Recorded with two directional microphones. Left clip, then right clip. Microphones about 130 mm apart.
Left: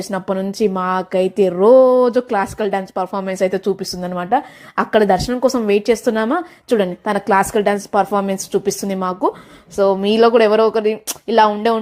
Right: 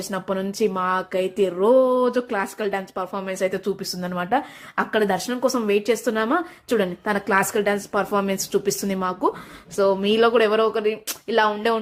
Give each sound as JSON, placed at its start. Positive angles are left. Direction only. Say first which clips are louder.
{"t": 0.0, "sound": "speech", "louder": "left 5 dB", "side_deg": 30}
{"t": 4.7, "sound": "a woman's voice", "louder": "left 7 dB", "side_deg": 40}